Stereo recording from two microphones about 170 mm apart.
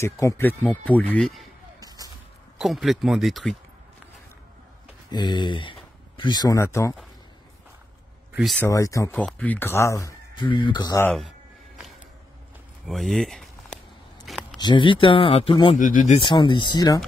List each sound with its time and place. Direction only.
0.0 s speech: 15° left (ahead or behind); by 1.5 s centre (ahead or behind)
1.8 s music: 20° right (ahead or behind)
2.6 s speech: centre (ahead or behind)
5.1 s speech: 25° left (ahead or behind)
8.3 s a sound: 5° right (ahead or behind)
8.5 s speech: 20° left (ahead or behind)
9.1 s speech: 10° left (ahead or behind)
12.8 s a sound: centre (ahead or behind)
14.6 s speech: 30° left (ahead or behind)
15.7 s speech: 50° left (ahead or behind)
16.2 s speech: 30° left (ahead or behind)